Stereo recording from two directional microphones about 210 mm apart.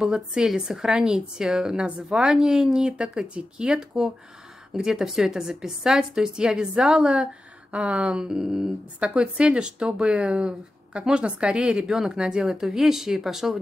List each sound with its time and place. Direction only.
0.0 s speech: centre (ahead or behind)